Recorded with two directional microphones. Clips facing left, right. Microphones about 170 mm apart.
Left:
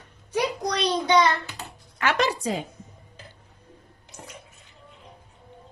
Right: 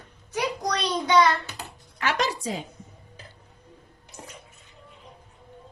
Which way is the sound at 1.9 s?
60° left (ahead or behind).